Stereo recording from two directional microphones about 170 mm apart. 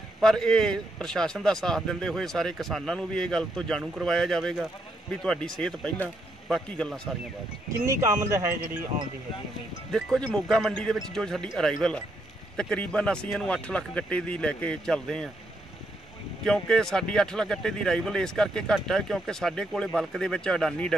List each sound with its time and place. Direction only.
0.2 s speech: 5° left (ahead or behind)
7.8 s speech: 20° right (ahead or behind)
9.9 s speech: 5° left (ahead or behind)
16.4 s speech: 5° left (ahead or behind)